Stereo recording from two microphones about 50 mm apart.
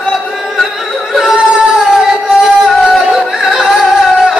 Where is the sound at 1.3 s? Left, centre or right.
Centre.